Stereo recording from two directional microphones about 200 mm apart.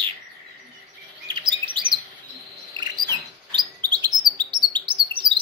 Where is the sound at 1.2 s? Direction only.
25° right (ahead or behind).